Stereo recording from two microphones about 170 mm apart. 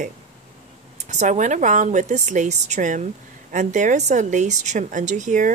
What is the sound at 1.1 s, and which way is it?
A woman's voice, 45° right (ahead or behind).